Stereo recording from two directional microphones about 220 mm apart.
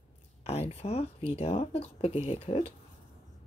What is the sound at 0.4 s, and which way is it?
Speech, 25° left (ahead or behind).